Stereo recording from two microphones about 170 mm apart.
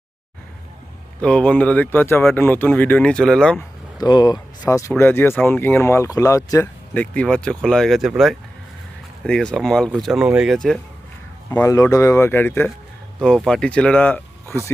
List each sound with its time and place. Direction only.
1.2 s speech: 5° left (ahead or behind)
4.0 s speech: 25° left (ahead or behind); by 10.8 s centre (ahead or behind)
11.5 s speech: 15° left (ahead or behind)